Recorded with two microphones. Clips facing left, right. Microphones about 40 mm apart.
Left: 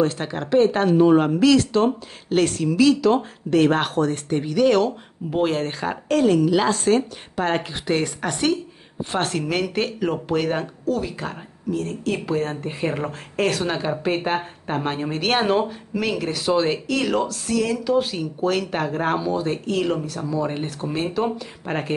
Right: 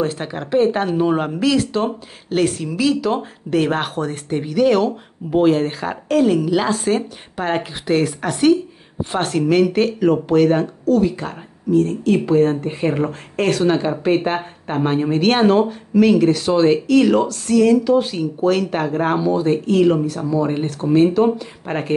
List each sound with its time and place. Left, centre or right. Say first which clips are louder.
0.0 s speech: even; centre